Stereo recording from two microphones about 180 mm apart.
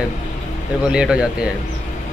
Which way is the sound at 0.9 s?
5° right (ahead or behind).